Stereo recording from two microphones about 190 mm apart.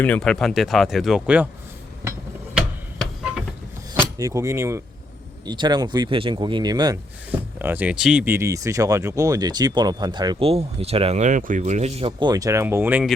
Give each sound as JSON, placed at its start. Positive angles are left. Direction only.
{"t": 0.0, "sound": "speech", "side_deg": 5}
{"t": 2.6, "sound": "a sound", "side_deg": -5}
{"t": 4.2, "sound": "speech", "side_deg": -15}
{"t": 7.3, "sound": "speech", "side_deg": -10}